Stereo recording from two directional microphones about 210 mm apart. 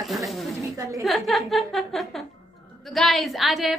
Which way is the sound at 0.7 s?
15° right (ahead or behind).